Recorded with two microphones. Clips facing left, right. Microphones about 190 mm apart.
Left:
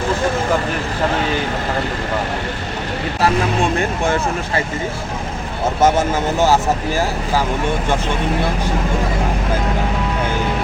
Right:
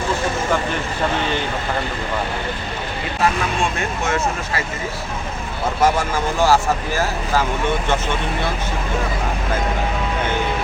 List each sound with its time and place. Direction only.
4.0 s speech: 30° left (ahead or behind)
5.8 s speech: 20° left (ahead or behind)